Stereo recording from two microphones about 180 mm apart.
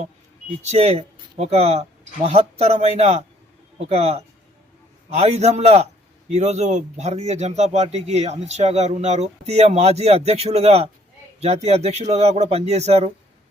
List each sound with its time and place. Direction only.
0.7 s speech: 35° right (ahead or behind)